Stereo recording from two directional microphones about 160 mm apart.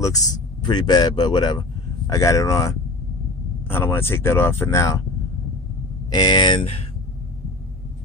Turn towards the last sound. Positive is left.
turn(degrees=35)  # may be behind; listen again after turning